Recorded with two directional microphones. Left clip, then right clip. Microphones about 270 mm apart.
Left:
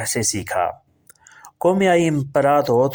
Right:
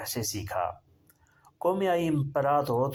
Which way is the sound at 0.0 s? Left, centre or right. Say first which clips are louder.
Left 11 dB; left.